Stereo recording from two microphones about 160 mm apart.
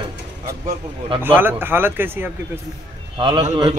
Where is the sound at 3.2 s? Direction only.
30° right (ahead or behind).